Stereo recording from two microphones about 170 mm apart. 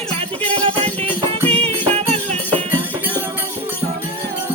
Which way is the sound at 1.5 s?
35° right (ahead or behind).